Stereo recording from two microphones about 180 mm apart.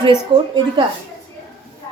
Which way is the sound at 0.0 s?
25° right (ahead or behind).